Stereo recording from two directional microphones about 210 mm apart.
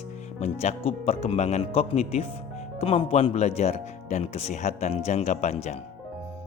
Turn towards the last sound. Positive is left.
turn(degrees=35)  # may be behind; listen again after turning